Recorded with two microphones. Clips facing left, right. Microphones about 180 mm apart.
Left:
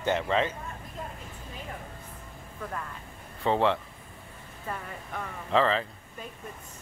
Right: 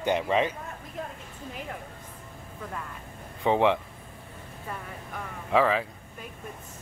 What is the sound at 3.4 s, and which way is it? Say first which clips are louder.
Speech: right 2 dB; 15° right (ahead or behind).